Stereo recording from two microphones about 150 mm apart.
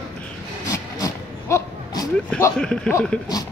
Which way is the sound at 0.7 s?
20° left (ahead or behind).